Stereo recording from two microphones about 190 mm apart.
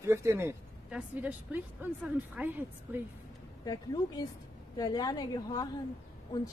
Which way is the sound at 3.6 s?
20° left (ahead or behind).